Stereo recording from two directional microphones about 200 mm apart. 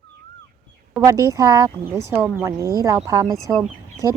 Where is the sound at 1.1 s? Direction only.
15° right (ahead or behind).